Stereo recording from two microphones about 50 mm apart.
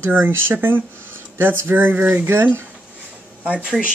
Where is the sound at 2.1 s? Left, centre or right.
Right.